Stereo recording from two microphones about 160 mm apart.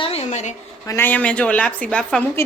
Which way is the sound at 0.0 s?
40° left (ahead or behind).